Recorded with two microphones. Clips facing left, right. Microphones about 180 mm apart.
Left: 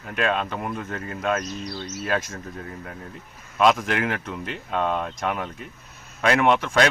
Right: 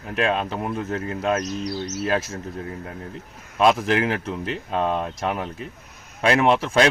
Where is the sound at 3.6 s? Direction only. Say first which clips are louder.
Right 2 dB; 30° right (ahead or behind).